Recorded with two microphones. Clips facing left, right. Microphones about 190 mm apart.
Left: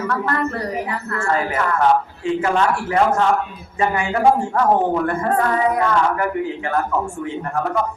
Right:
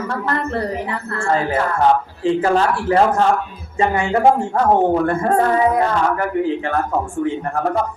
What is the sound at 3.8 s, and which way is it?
Speech, 20° right (ahead or behind).